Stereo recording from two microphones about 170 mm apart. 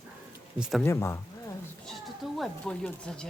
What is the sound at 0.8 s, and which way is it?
Speech, 15° left (ahead or behind).